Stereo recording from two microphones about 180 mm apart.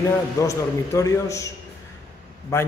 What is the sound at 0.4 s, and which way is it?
Speech, 15° left (ahead or behind).